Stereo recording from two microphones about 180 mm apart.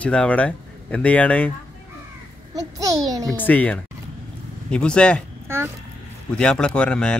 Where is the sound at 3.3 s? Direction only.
10° left (ahead or behind).